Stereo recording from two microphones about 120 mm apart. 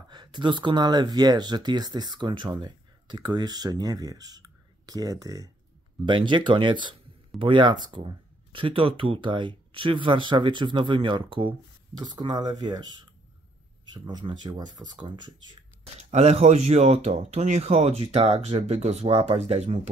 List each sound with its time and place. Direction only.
0.1 s speech: 40° right (ahead or behind)
6.0 s speech: 40° right (ahead or behind)
14.0 s speech: 40° right (ahead or behind)
16.0 s speech: 65° right (ahead or behind)